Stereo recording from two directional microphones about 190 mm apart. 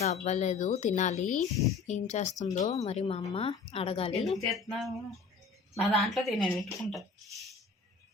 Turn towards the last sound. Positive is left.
turn(degrees=0)  # may be behind; listen again after turning